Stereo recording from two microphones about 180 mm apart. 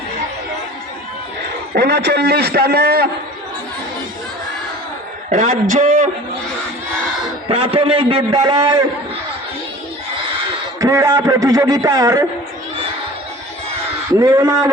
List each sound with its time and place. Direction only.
1.7 s a man's voice: 70° right (ahead or behind)
5.3 s a man's voice: 45° right (ahead or behind)
7.4 s a man's voice: 30° right (ahead or behind)
10.8 s a man's voice: 20° right (ahead or behind)
14.1 s a man's voice: 20° right (ahead or behind)